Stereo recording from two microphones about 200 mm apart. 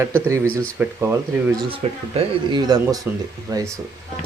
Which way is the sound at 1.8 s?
30° right (ahead or behind).